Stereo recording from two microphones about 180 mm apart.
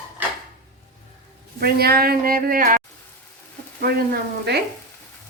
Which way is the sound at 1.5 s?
60° right (ahead or behind).